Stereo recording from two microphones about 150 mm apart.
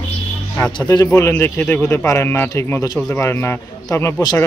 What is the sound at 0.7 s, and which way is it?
Speech, 25° left (ahead or behind).